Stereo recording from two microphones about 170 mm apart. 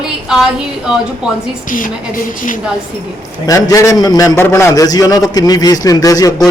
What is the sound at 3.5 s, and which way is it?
A man's voice, 20° left (ahead or behind).